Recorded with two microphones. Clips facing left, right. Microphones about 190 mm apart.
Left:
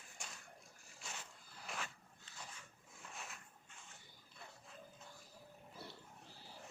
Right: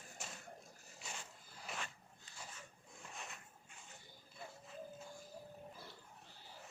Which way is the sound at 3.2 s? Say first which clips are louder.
Right 1 dB; centre (ahead or behind).